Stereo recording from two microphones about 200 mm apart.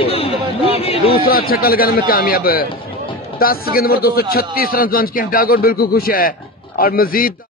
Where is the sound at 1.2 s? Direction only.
50° left (ahead or behind).